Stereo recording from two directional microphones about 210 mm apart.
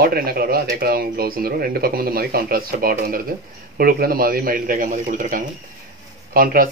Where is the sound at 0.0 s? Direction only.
45° right (ahead or behind).